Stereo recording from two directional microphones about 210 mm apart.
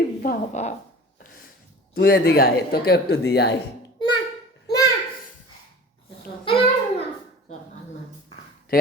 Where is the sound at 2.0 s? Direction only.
45° left (ahead or behind).